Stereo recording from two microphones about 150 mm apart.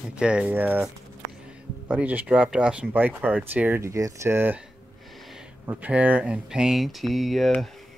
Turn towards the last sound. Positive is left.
turn(degrees=0)  # may be behind; listen again after turning